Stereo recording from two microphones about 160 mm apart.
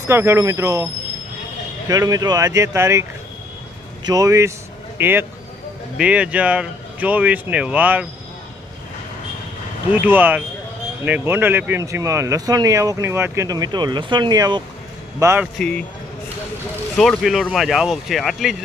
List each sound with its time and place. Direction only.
0.0 s speech: 15° right (ahead or behind)
1.9 s speech: 20° right (ahead or behind)
9.9 s speech: 10° right (ahead or behind)
15.5 s speech: 5° left (ahead or behind)
16.9 s speech: centre (ahead or behind)